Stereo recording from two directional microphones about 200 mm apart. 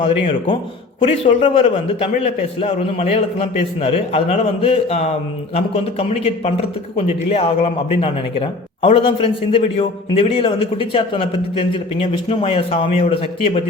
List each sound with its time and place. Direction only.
0.0 s a man's voice: 25° left (ahead or behind)
1.2 s a man's voice: 40° left (ahead or behind)
1.5 s a man's voice: 30° left (ahead or behind)